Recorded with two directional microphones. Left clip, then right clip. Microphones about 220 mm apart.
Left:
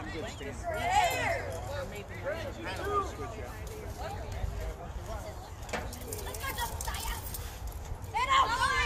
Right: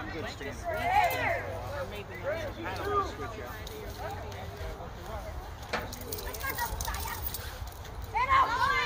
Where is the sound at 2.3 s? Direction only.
50° right (ahead or behind).